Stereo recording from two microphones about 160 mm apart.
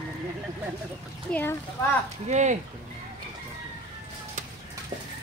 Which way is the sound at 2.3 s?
45° right (ahead or behind).